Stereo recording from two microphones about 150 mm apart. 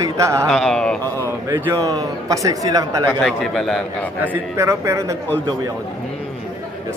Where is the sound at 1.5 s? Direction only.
25° right (ahead or behind).